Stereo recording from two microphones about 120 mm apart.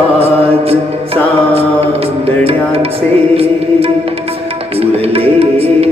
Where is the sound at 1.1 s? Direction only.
55° right (ahead or behind).